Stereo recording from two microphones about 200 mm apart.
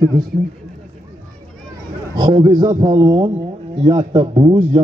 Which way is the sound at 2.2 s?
20° right (ahead or behind).